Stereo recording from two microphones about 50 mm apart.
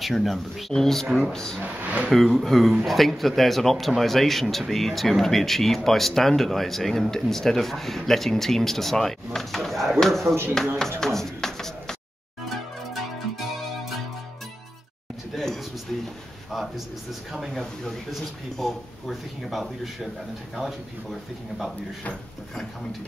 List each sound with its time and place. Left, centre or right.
0.0 s speech: centre
1.3 s speech: centre
1.6 s speech: right
2.0 s speech: centre
11.0 s a sound: centre
15.3 s a sound: centre
16.4 s a man's voice: centre
18.1 s speech: centre